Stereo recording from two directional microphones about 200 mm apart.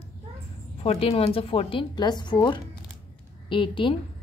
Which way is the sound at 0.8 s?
30° left (ahead or behind).